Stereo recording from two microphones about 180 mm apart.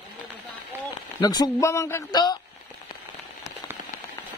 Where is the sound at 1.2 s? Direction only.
20° left (ahead or behind).